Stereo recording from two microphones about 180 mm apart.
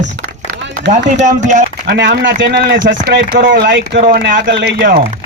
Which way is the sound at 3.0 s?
60° right (ahead or behind).